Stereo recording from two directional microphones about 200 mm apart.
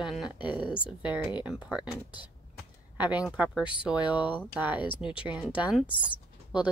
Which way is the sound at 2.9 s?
5° right (ahead or behind).